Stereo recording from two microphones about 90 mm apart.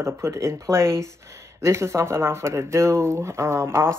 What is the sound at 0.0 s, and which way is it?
Speech, 30° right (ahead or behind).